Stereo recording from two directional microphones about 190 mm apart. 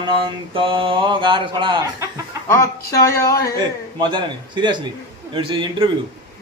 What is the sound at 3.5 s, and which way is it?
Mantra, 25° right (ahead or behind).